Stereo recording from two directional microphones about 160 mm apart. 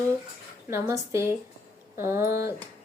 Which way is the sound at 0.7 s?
15° right (ahead or behind).